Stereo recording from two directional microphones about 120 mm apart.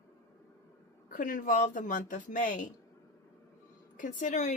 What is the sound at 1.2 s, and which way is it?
Speech, 90° left.